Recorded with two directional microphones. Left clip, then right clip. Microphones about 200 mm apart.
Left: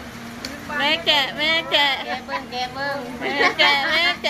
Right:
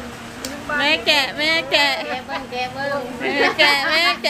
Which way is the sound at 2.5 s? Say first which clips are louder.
Right 3 dB; 45° left (ahead or behind).